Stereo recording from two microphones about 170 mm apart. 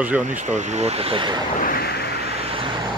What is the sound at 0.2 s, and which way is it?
Speech, 45° right (ahead or behind).